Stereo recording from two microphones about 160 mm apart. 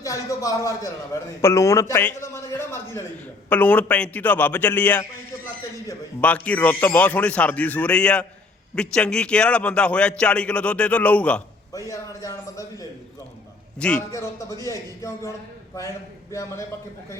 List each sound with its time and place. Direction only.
0.0 s a man's voice: 20° left (ahead or behind)
11.9 s a man's voice: 20° left (ahead or behind)
13.7 s a man's voice: 5° left (ahead or behind)
14.1 s a man's voice: 20° left (ahead or behind)